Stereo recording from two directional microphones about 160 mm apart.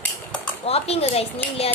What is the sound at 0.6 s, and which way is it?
Speech, 40° left (ahead or behind).